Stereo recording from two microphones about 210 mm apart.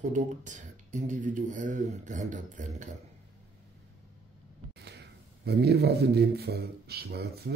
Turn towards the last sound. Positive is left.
turn(degrees=-50)  # may be behind; listen again after turning